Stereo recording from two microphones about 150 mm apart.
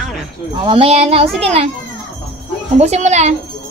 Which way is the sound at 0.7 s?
40° right (ahead or behind).